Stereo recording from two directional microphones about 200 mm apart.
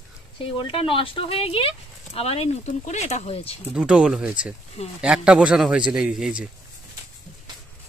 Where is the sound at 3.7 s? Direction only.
5° right (ahead or behind).